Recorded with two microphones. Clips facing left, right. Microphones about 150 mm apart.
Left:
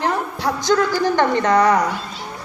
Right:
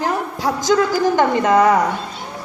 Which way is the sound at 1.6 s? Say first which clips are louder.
Right 2 dB; 25° right (ahead or behind).